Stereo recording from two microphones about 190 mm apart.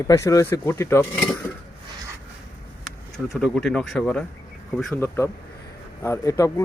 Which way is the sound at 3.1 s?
Centre (ahead or behind).